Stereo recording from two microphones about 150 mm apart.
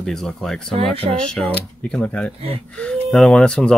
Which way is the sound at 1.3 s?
5° left (ahead or behind).